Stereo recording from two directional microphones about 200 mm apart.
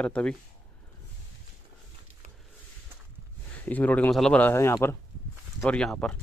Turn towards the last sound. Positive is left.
turn(degrees=5)  # may be behind; listen again after turning